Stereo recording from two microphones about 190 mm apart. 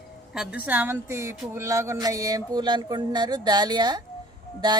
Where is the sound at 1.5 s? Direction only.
15° right (ahead or behind).